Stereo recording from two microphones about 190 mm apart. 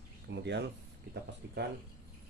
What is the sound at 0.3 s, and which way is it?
Speech, 65° right (ahead or behind).